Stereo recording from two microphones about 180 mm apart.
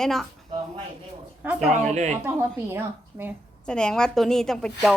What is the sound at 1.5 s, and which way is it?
Speech, 40° right (ahead or behind).